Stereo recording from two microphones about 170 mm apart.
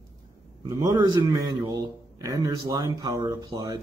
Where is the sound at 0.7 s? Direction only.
20° right (ahead or behind).